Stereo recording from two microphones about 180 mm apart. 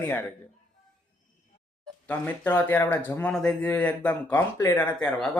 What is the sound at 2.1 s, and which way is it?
Speech, 10° left (ahead or behind).